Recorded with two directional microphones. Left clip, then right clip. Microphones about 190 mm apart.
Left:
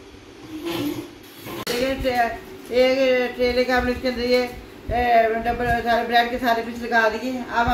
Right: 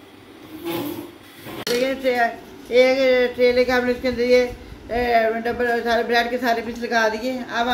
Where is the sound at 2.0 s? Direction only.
30° right (ahead or behind).